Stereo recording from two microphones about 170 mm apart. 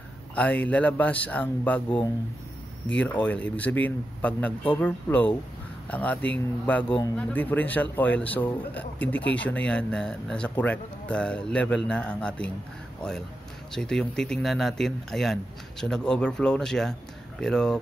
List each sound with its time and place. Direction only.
0.4 s speech: 10° left (ahead or behind)
13.7 s speech: 5° left (ahead or behind)